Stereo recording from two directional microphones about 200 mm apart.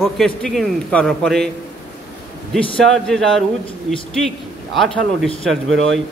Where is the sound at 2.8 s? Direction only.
Centre (ahead or behind).